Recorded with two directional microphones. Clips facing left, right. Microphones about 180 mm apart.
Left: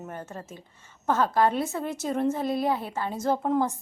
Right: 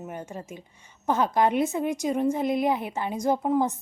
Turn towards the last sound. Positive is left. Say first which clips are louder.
# right 1 dB
turn(degrees=-15)  # may be behind; listen again after turning